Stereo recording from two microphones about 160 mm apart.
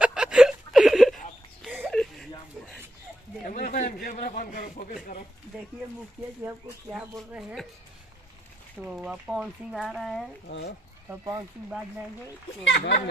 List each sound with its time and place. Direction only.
0.0 s a sound: 5° right (ahead or behind)
3.4 s a sound: 55° left (ahead or behind)
6.9 s speech: centre (ahead or behind)
8.9 s speech: 5° right (ahead or behind)
11.1 s speech: 25° right (ahead or behind)
12.7 s speech: 90° left